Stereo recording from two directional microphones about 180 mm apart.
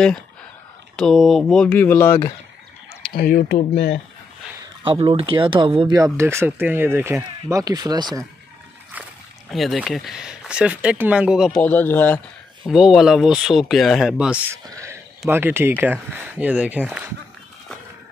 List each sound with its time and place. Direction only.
0.9 s speech: centre (ahead or behind)
3.1 s speech: 55° left (ahead or behind)
3.7 s speech: 70° left (ahead or behind)
4.8 s speech: 30° right (ahead or behind)
8.9 s splash: 10° right (ahead or behind)
9.5 s speech: centre (ahead or behind)
11.6 s speech: 10° left (ahead or behind)
12.6 s speech: 5° right (ahead or behind)